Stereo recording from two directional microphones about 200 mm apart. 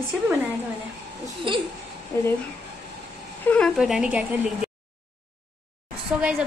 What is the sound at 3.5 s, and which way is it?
Speech, centre (ahead or behind).